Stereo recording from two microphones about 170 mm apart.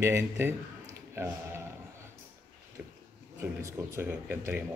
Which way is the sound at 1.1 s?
15° right (ahead or behind).